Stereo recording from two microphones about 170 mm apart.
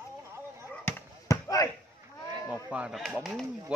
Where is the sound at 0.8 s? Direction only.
20° left (ahead or behind).